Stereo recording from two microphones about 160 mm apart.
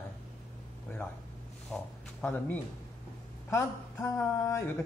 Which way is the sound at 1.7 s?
10° left (ahead or behind).